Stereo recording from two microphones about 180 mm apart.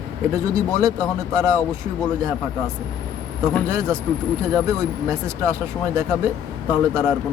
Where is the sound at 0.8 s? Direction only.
20° right (ahead or behind).